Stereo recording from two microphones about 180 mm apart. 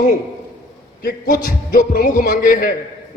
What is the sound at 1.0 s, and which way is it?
A man's voice, 55° left (ahead or behind).